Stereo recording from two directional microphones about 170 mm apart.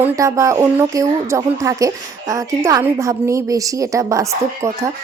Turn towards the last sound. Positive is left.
turn(degrees=-20)  # may be behind; listen again after turning